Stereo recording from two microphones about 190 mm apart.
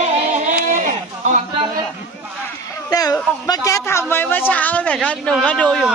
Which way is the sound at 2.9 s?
20° left (ahead or behind).